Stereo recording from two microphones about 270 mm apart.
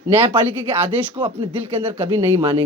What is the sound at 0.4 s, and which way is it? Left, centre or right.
Speech, centre.